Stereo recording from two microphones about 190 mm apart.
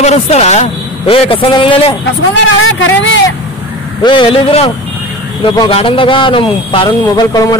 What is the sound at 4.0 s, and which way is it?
Speech, 25° left (ahead or behind).